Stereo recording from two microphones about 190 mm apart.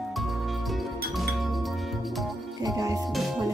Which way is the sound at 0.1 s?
Centre (ahead or behind).